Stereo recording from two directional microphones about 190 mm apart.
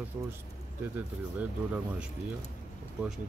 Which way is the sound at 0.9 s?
10° right (ahead or behind).